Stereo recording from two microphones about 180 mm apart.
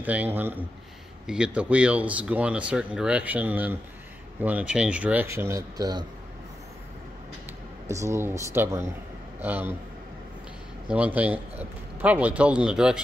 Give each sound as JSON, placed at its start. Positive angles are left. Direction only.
{"t": 0.0, "sound": "speech", "side_deg": -10}
{"t": 7.9, "sound": "speech", "side_deg": -15}
{"t": 10.9, "sound": "speech", "side_deg": -10}